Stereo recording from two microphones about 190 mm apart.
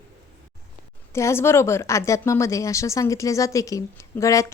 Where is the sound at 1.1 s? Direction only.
15° left (ahead or behind).